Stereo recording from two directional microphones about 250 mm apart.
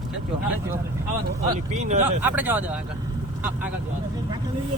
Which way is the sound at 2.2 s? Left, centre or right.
Centre.